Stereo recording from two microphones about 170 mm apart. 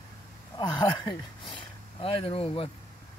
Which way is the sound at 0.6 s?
25° left (ahead or behind).